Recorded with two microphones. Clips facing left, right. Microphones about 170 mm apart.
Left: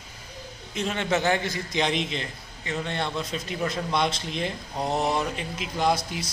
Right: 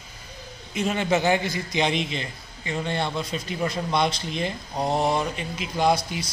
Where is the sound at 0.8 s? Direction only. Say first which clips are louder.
Right 3 dB; 5° right (ahead or behind).